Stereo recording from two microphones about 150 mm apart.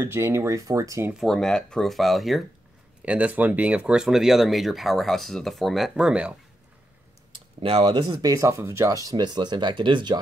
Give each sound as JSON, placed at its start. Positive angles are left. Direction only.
{"t": 0.0, "sound": "speech", "side_deg": -20}
{"t": 1.1, "sound": "speech", "side_deg": 0}
{"t": 7.6, "sound": "speech", "side_deg": -40}
{"t": 8.2, "sound": "speech", "side_deg": -20}